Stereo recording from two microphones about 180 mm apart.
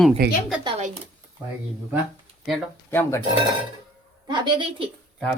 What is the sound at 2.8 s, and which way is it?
Speech, 15° left (ahead or behind).